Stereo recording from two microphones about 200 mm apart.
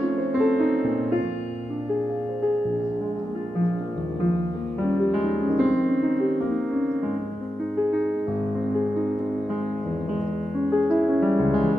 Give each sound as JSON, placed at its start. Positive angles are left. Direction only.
{"t": 0.4, "sound": "music", "side_deg": 0}
{"t": 5.1, "sound": "music", "side_deg": 0}
{"t": 10.8, "sound": "music", "side_deg": -5}